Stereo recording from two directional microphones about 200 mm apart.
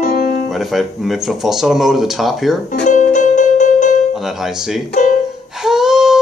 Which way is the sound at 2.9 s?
40° left (ahead or behind).